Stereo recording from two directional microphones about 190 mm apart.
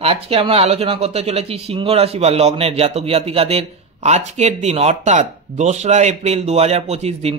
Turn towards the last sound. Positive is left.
turn(degrees=-35)  # may be behind; listen again after turning